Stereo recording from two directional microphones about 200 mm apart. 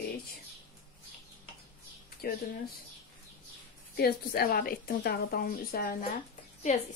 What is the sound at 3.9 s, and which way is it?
A woman's voice, 50° left (ahead or behind).